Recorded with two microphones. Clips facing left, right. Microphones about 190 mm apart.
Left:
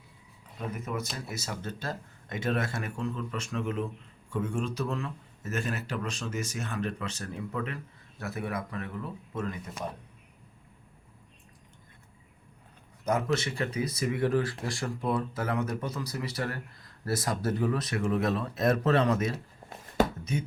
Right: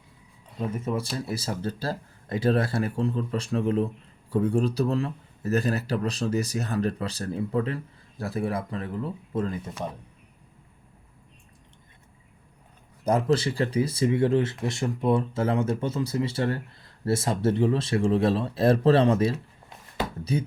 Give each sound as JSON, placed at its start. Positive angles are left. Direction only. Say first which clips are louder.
{"t": 0.7, "sound": "speech", "louder": "right 5 dB", "side_deg": -30}
{"t": 13.1, "sound": "speech", "louder": "right 5 dB", "side_deg": -30}
{"t": 20.0, "sound": "a sound", "louder": "left 5 dB", "side_deg": 45}